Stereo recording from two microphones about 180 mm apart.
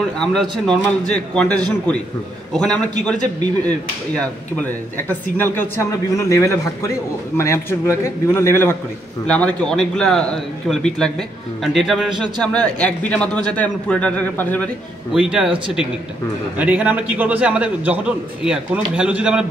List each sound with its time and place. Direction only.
0.2 s a man's voice: 5° left (ahead or behind)
15.1 s speech: 5° right (ahead or behind)
16.5 s a man's voice: 10° right (ahead or behind)